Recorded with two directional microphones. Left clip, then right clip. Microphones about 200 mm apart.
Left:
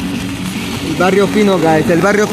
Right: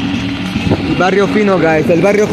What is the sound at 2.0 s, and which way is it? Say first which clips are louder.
Speech: right 1 dB; 25° left (ahead or behind).